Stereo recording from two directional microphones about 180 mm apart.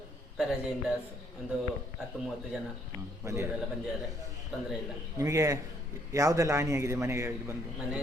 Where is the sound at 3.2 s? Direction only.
15° right (ahead or behind).